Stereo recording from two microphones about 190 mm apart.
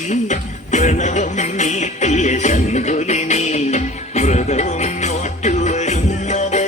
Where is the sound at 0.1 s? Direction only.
40° left (ahead or behind).